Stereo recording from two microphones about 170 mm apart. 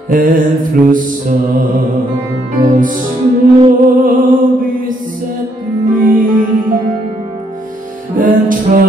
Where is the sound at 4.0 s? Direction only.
55° right (ahead or behind).